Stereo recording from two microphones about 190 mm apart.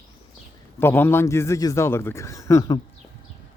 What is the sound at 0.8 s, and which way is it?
Speech, 10° left (ahead or behind).